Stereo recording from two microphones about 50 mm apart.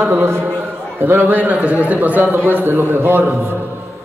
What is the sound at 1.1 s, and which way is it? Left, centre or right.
A man's voice, right.